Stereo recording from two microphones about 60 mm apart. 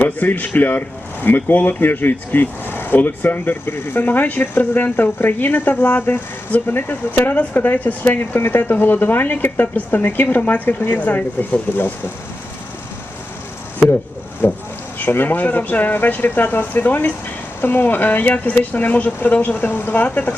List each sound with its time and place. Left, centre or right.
0.0 s speech: left
14.4 s speech: left